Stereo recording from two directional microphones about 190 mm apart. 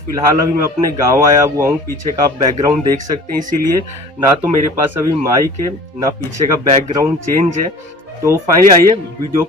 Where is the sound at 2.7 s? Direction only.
40° right (ahead or behind).